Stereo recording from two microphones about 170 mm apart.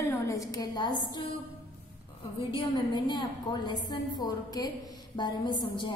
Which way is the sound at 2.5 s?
25° left (ahead or behind).